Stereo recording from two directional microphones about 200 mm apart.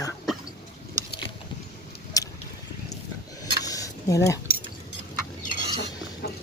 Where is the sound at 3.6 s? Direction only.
15° left (ahead or behind).